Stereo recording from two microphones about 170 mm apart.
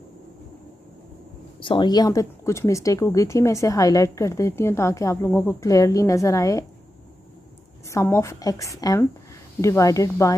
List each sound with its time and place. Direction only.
1.6 s speech: 30° left (ahead or behind)
7.8 s speech: 15° left (ahead or behind)